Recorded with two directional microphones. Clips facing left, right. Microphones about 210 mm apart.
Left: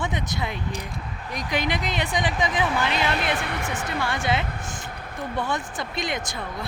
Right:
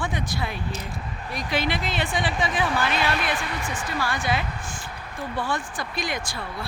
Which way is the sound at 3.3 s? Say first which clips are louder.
Left 2 dB; 60° left (ahead or behind).